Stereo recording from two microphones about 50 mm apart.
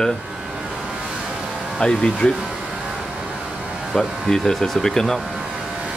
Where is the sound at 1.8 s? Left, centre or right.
Centre.